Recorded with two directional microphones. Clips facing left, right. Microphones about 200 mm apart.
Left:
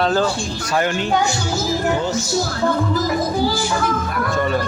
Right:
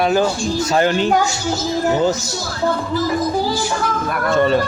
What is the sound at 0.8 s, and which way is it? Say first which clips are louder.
Speech: right 3 dB; 35° right (ahead or behind).